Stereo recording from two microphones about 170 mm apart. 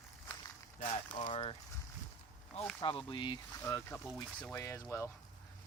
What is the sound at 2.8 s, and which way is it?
Speech, 30° left (ahead or behind).